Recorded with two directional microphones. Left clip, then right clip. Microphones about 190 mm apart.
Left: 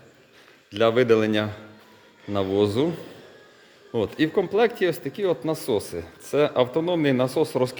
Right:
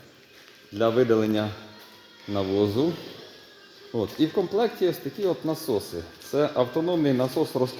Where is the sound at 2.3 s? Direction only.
25° left (ahead or behind).